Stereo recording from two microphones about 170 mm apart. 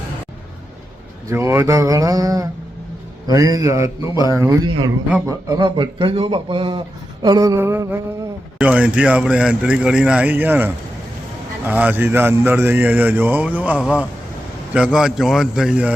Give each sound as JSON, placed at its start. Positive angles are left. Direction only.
{"t": 1.3, "sound": "a man's voice", "side_deg": -15}
{"t": 5.0, "sound": "a man's voice", "side_deg": -10}
{"t": 5.5, "sound": "a man's voice", "side_deg": -30}